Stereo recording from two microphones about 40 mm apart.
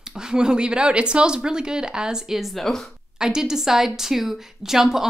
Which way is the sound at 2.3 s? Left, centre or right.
Centre.